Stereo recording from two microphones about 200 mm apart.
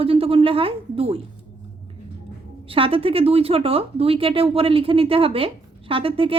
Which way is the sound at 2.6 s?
25° right (ahead or behind).